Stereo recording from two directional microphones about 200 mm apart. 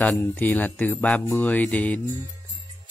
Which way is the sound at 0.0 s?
10° left (ahead or behind).